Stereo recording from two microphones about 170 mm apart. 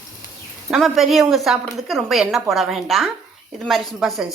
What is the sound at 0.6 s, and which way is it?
Speech, centre (ahead or behind).